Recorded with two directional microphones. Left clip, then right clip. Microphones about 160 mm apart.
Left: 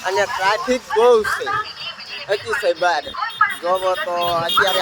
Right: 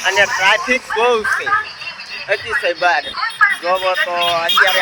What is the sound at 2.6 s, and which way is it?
Speech, centre (ahead or behind).